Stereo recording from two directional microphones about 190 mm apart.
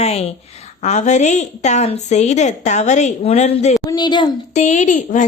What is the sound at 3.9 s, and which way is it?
Speech, 25° left (ahead or behind).